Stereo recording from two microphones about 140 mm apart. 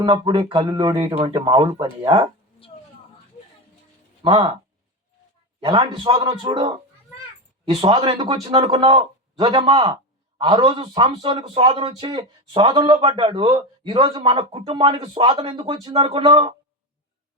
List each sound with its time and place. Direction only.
0.0 s a man's voice: 35° right (ahead or behind)
4.2 s a man's voice: 40° right (ahead or behind)